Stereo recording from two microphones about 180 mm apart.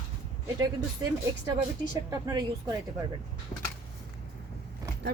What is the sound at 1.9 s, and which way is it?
Speech, 20° right (ahead or behind).